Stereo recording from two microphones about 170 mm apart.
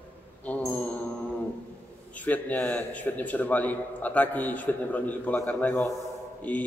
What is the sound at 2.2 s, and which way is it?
A man's voice, 10° left (ahead or behind).